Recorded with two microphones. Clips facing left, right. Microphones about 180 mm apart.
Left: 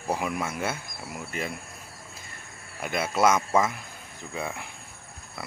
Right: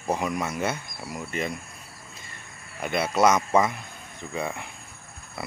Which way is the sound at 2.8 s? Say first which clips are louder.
Right 2 dB; 5° left (ahead or behind).